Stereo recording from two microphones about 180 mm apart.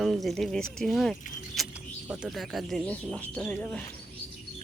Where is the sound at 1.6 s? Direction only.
Centre (ahead or behind).